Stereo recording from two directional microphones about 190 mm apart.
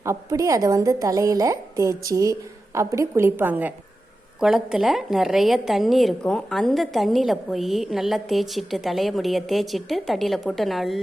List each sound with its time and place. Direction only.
0.0 s a woman's voice: 15° right (ahead or behind); by 11.0 s centre (ahead or behind)